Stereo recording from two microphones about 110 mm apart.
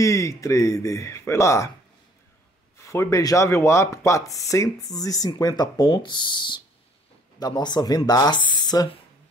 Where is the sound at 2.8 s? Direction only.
30° left (ahead or behind).